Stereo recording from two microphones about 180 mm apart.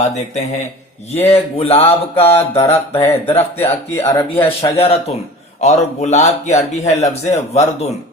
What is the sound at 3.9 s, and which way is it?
Speech, 15° left (ahead or behind).